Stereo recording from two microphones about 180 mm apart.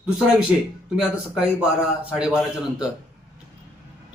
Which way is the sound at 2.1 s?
5° right (ahead or behind).